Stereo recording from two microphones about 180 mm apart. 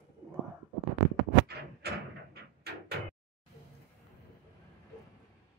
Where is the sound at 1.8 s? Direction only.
65° right (ahead or behind).